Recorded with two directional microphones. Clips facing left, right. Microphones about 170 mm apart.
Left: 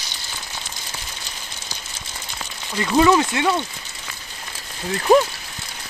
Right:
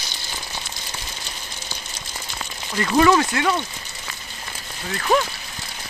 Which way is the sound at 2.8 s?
15° left (ahead or behind).